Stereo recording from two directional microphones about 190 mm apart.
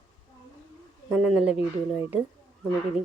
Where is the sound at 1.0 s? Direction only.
Centre (ahead or behind).